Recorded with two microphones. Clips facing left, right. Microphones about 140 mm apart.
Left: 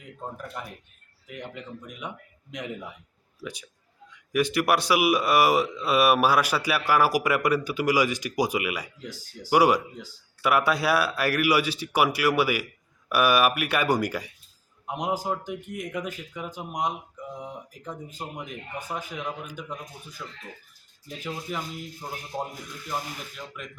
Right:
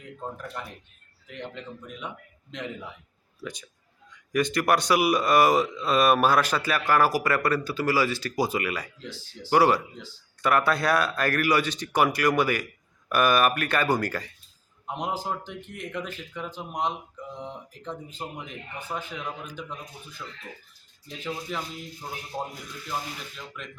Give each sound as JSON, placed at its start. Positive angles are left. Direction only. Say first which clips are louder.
{"t": 0.6, "sound": "speech", "louder": "even", "side_deg": 5}
{"t": 21.5, "sound": "speech", "louder": "left 1 dB", "side_deg": 5}
{"t": 22.3, "sound": "speech", "louder": "left 1 dB", "side_deg": -5}